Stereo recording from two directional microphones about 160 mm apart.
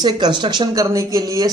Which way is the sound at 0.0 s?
25° right (ahead or behind).